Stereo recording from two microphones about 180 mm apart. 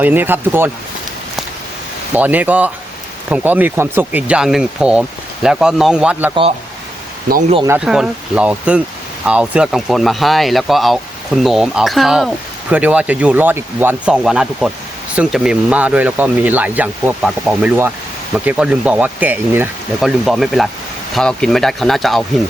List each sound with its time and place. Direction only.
0.0 s speech: 10° right (ahead or behind)
2.1 s speech: 10° right (ahead or behind)
7.3 s speech: 50° right (ahead or behind)
7.7 s speech: 5° right (ahead or behind)